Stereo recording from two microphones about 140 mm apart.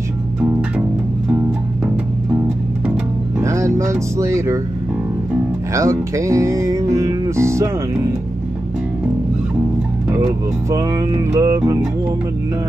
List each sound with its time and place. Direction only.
0.4 s music: 10° right (ahead or behind)
3.3 s speech: 20° right (ahead or behind)
5.7 s speech: 20° right (ahead or behind)
10.2 s speech: 25° right (ahead or behind)